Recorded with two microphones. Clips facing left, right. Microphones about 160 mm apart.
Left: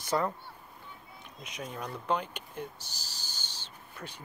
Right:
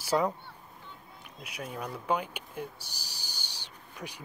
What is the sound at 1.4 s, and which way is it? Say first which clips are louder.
Speech: right 1 dB; 5° right (ahead or behind).